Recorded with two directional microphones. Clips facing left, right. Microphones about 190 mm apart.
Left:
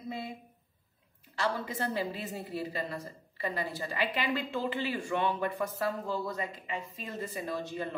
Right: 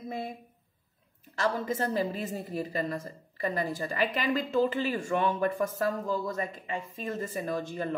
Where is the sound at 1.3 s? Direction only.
45° right (ahead or behind).